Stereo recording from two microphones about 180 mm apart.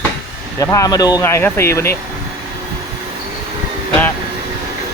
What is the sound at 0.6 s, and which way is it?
Speech, 20° left (ahead or behind).